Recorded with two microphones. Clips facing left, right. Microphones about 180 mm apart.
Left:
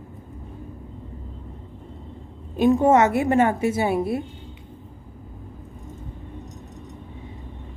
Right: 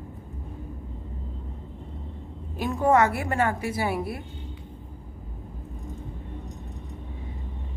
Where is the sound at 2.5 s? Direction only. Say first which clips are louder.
Left 5 dB; 20° left (ahead or behind).